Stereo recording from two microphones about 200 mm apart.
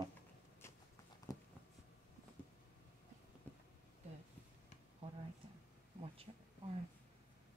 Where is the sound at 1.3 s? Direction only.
15° left (ahead or behind).